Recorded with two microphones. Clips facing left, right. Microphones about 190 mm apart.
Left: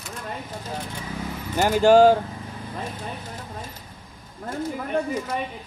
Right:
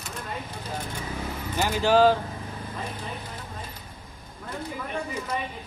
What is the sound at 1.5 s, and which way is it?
Speech, 45° left (ahead or behind).